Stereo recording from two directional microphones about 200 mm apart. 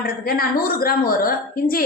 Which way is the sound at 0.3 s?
50° left (ahead or behind).